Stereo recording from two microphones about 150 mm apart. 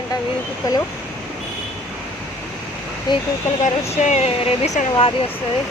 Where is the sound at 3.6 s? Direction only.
50° left (ahead or behind).